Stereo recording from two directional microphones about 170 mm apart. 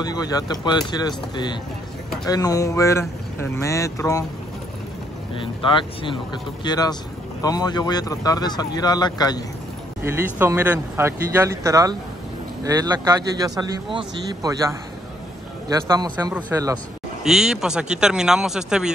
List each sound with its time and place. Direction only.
0.0 s speech: 20° left (ahead or behind)
5.4 s speech: 30° left (ahead or behind)
10.0 s speech: 10° right (ahead or behind)
16.3 s speech: 10° right (ahead or behind)